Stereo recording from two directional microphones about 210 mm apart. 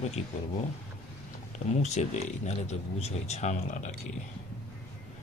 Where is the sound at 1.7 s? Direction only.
35° left (ahead or behind).